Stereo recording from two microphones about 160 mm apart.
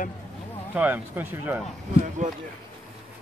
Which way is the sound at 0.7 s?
10° right (ahead or behind).